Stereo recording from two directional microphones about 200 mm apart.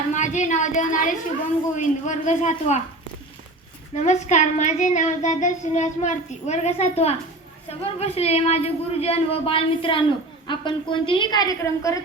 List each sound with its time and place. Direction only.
0.1 s speech: 35° left (ahead or behind)
3.9 s speech: 35° left (ahead or behind); by 11.9 s 15° left (ahead or behind)